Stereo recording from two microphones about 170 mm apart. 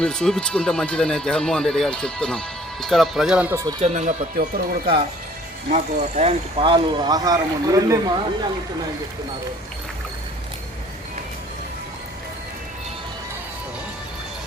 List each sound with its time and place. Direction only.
0.0 s speech: 5° left (ahead or behind)
3.5 s speech: 20° right (ahead or behind)
3.8 s speech: 40° right (ahead or behind)
4.4 s speech: 55° right (ahead or behind)
5.7 s speech: 45° right (ahead or behind); by 8.2 s 20° right (ahead or behind)